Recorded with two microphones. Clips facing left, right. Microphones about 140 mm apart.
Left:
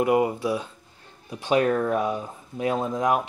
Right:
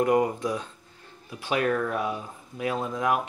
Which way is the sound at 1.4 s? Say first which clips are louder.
Left 4 dB; 25° left (ahead or behind).